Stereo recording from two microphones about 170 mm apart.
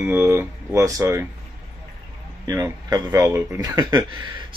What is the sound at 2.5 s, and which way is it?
Speech, 20° right (ahead or behind).